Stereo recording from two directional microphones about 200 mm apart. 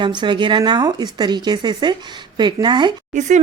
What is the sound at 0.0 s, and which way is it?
Speech, 25° right (ahead or behind).